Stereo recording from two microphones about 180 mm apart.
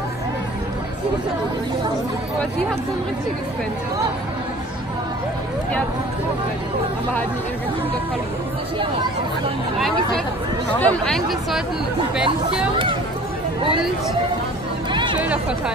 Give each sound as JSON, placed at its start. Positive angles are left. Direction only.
{"t": 9.8, "sound": "speech", "side_deg": 0}
{"t": 14.9, "sound": "music", "side_deg": -25}